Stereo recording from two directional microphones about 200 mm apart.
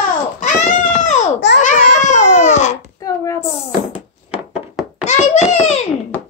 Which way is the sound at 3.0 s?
15° left (ahead or behind).